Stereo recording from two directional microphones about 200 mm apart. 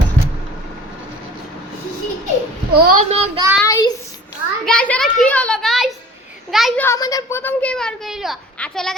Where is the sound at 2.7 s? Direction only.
50° right (ahead or behind).